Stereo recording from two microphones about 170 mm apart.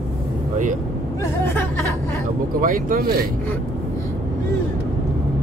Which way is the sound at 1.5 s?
10° left (ahead or behind).